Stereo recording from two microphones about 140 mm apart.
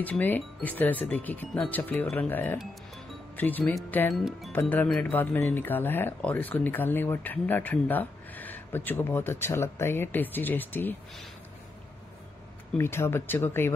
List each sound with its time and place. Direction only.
0.0 s speech: 15° left (ahead or behind)
4.1 s speech: centre (ahead or behind)
4.5 s speech: 15° left (ahead or behind)
12.7 s speech: 15° left (ahead or behind)